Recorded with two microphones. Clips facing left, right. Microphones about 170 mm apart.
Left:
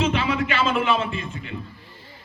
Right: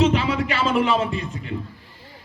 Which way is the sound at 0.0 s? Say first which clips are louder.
Right 3 dB; 35° right (ahead or behind).